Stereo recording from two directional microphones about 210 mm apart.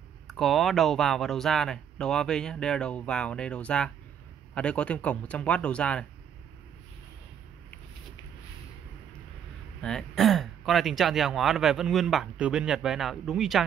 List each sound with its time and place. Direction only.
0.3 s speech: centre (ahead or behind)
9.8 s speech: 5° left (ahead or behind)